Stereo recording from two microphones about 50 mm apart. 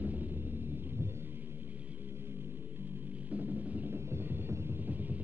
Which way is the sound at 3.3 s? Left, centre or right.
Right.